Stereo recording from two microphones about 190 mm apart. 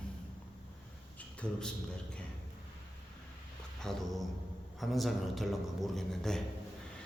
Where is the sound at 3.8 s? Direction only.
Centre (ahead or behind).